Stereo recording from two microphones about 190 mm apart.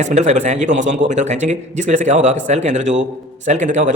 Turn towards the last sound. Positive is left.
turn(degrees=-40)  # may be behind; listen again after turning